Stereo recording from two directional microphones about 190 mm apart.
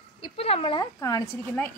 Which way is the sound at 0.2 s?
30° left (ahead or behind).